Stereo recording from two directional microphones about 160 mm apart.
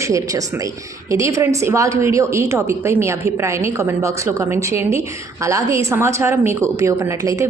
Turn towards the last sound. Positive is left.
turn(degrees=-20)  # may be behind; listen again after turning